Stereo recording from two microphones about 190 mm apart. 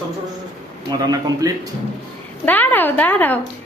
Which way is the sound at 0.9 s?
20° right (ahead or behind).